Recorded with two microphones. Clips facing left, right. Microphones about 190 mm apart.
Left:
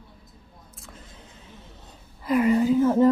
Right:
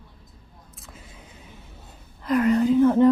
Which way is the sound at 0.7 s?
5° right (ahead or behind).